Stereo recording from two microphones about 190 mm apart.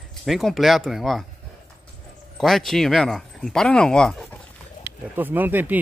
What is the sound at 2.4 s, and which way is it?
Speech, centre (ahead or behind).